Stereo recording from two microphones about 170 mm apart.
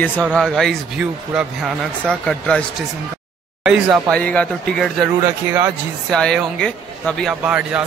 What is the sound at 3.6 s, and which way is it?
Speech, 5° right (ahead or behind).